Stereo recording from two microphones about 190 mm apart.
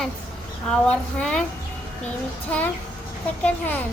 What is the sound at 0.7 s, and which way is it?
Speech, 5° left (ahead or behind).